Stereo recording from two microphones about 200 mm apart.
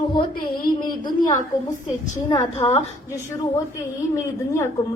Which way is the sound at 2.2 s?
15° left (ahead or behind).